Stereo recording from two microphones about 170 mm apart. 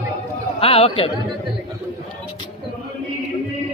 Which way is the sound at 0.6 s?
35° left (ahead or behind).